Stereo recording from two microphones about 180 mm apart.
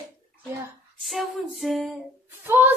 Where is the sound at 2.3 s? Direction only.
10° right (ahead or behind).